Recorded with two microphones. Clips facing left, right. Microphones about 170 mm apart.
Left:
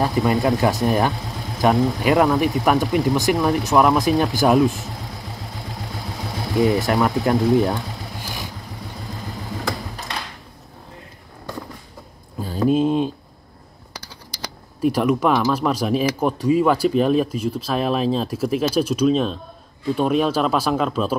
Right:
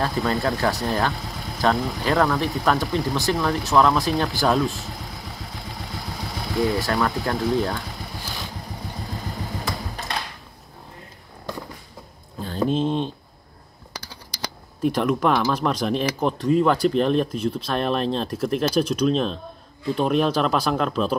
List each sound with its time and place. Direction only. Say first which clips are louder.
0.0 s speech: left 4 dB; 15° left (ahead or behind)
6.6 s speech: left 4 dB; 20° left (ahead or behind)
12.4 s a sound: left 4 dB; 5° left (ahead or behind)
14.8 s speech: left 3 dB; 5° left (ahead or behind)